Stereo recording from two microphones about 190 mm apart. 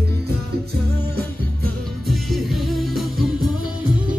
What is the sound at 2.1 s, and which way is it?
Music, centre (ahead or behind).